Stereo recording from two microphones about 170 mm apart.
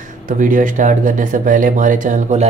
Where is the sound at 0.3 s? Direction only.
50° right (ahead or behind).